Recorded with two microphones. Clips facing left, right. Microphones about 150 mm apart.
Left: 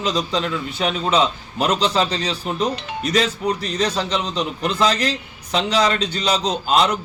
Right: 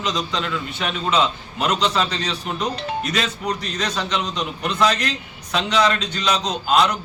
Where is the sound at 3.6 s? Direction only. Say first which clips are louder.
Left 4 dB; 30° left (ahead or behind).